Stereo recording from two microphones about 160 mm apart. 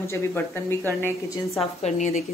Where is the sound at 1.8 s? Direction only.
50° left (ahead or behind).